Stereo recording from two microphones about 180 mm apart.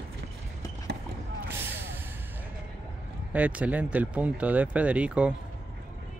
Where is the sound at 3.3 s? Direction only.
10° right (ahead or behind).